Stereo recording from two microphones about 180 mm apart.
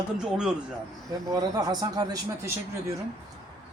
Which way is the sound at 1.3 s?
20° right (ahead or behind).